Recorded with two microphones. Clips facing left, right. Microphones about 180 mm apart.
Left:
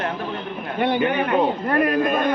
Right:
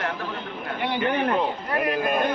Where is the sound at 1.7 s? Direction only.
55° left (ahead or behind).